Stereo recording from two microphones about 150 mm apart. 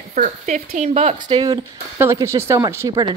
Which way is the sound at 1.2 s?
30° right (ahead or behind).